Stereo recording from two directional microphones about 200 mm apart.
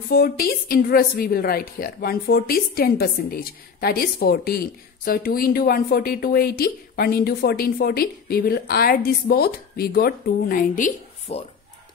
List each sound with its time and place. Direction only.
0.1 s a woman's voice: 50° left (ahead or behind)